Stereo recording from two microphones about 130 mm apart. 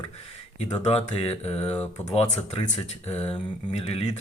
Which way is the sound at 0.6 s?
55° left (ahead or behind).